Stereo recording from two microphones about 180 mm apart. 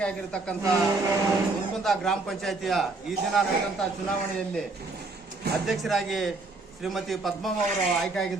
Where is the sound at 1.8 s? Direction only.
Centre (ahead or behind).